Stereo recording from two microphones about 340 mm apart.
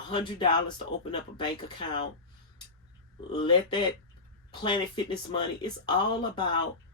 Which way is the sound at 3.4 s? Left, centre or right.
Centre.